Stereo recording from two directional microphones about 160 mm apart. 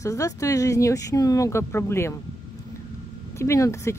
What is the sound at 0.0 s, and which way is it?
Speech, 20° left (ahead or behind).